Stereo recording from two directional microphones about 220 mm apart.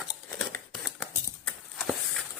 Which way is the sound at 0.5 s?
Centre (ahead or behind).